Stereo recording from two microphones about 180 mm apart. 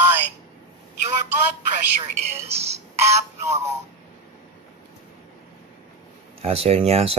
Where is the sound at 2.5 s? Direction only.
35° right (ahead or behind).